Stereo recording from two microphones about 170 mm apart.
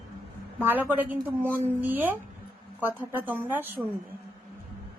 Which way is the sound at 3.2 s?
10° right (ahead or behind).